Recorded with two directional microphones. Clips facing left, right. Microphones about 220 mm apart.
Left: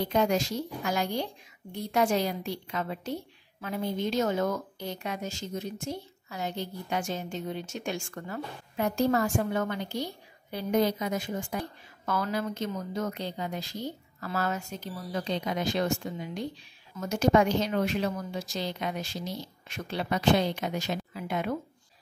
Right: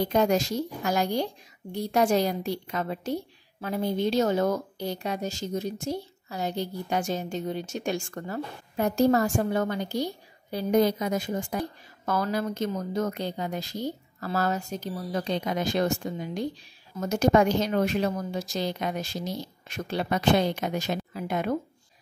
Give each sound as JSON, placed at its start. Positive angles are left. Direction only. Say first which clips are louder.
{"t": 0.1, "sound": "a woman's voice", "louder": "right 1 dB", "side_deg": -45}